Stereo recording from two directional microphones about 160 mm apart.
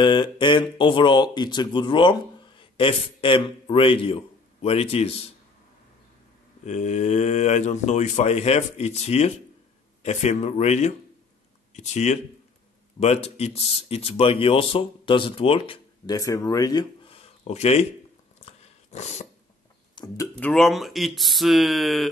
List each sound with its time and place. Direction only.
0.0 s speech: 30° left (ahead or behind)
6.6 s speech: 45° left (ahead or behind)
16.2 s speech: 20° left (ahead or behind)
17.0 s a sound: 35° left (ahead or behind)
18.4 s dog: 45° left (ahead or behind)
20.0 s a sound: 30° left (ahead or behind)
20.3 s speech: 5° left (ahead or behind)